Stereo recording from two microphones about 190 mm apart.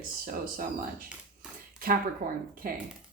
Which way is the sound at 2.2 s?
50° right (ahead or behind).